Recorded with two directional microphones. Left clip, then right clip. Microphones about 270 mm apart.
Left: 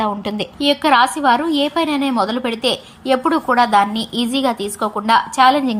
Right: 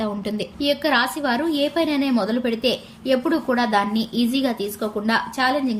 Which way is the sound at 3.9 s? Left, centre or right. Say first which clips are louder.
Left 3 dB; centre.